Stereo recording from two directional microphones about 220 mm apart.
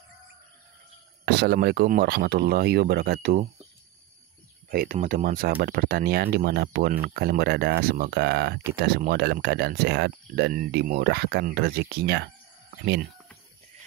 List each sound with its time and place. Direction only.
1.2 s speech: 45° right (ahead or behind)
4.6 s speech: 40° right (ahead or behind)